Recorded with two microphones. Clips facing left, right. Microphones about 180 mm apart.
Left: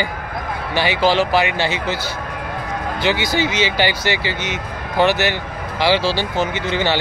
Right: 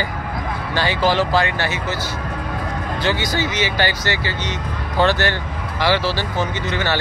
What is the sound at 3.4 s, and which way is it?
Speech, 20° left (ahead or behind).